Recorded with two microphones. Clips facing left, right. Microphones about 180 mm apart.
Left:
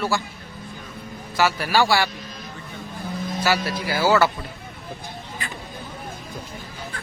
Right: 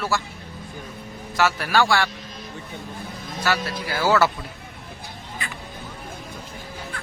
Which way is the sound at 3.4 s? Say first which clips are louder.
Left 1 dB; 5° left (ahead or behind).